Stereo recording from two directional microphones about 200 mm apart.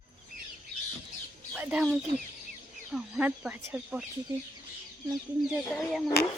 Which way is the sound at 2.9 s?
5° right (ahead or behind).